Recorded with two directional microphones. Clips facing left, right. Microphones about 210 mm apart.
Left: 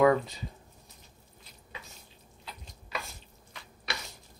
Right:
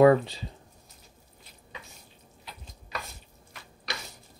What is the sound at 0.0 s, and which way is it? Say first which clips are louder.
Speech: right 5 dB; 30° right (ahead or behind).